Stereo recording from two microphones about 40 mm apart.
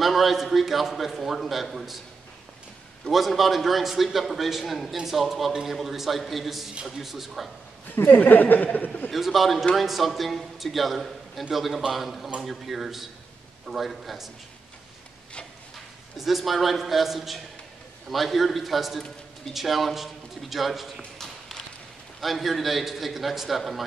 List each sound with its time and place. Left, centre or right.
0.0 s a man's voice: centre
3.1 s a man's voice: centre
7.9 s speech: left
8.2 s speech: left
9.1 s a man's voice: centre
16.2 s a man's voice: centre
22.2 s a man's voice: centre